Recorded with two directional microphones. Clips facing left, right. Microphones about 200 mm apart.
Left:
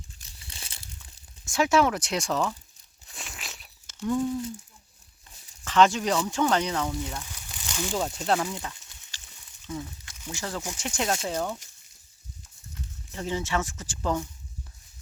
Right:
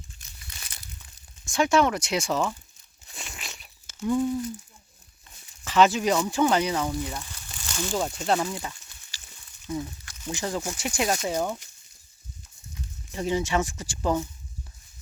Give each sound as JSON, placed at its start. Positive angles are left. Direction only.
{"t": 0.2, "sound": "crumpling", "side_deg": 30}
{"t": 1.5, "sound": "speech", "side_deg": 5}
{"t": 3.1, "sound": "a sound", "side_deg": 0}
{"t": 5.6, "sound": "speech", "side_deg": -5}
{"t": 7.3, "sound": "speech", "side_deg": 10}
{"t": 10.2, "sound": "speech", "side_deg": -20}
{"t": 13.1, "sound": "speech", "side_deg": -15}